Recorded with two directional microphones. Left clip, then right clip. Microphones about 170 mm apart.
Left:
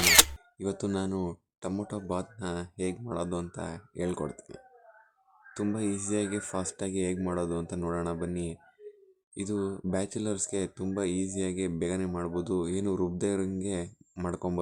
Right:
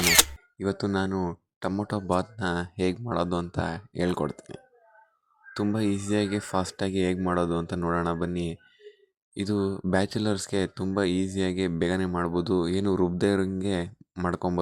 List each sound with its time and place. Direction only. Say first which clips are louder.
0.0 s camera: even; centre (ahead or behind)
0.6 s speech: right 5 dB; 30° right (ahead or behind)
1.2 s a sound: right 5 dB; 30° right (ahead or behind)
1.8 s speech: right 9 dB; 35° right (ahead or behind)
5.7 s speech: right 5 dB; 35° right (ahead or behind)